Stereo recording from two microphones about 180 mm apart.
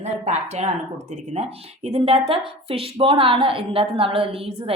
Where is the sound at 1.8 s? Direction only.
35° right (ahead or behind).